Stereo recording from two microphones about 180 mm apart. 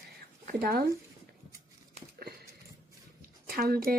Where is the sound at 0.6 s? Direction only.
55° right (ahead or behind).